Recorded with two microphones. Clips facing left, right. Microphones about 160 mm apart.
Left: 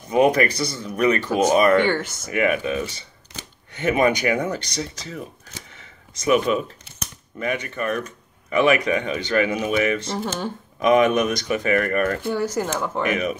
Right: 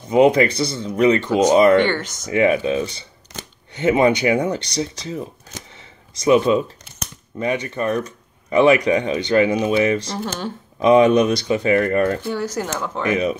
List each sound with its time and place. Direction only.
0.1 s speech: 25° right (ahead or behind)
1.9 s speech: 10° left (ahead or behind)
2.3 s speech: 30° right (ahead or behind)
10.1 s speech: 10° left (ahead or behind)
10.8 s speech: 30° right (ahead or behind)
12.3 s speech: 10° left (ahead or behind)
13.1 s speech: 30° right (ahead or behind)